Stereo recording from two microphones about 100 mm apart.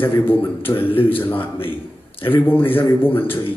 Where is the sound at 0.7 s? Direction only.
65° left (ahead or behind).